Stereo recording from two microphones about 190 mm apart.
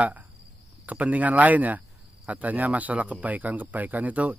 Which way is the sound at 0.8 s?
5° right (ahead or behind).